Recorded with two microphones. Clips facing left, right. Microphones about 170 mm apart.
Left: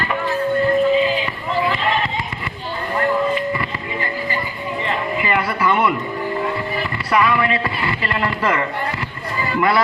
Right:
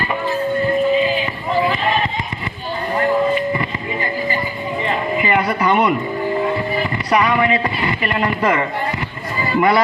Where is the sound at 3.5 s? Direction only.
20° right (ahead or behind).